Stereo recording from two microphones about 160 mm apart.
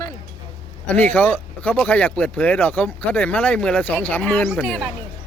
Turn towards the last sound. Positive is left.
turn(degrees=5)  # may be behind; listen again after turning